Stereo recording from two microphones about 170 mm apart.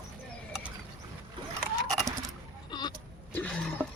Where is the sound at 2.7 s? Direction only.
25° left (ahead or behind).